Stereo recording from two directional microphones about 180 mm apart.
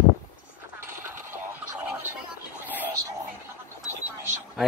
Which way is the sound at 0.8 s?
15° right (ahead or behind).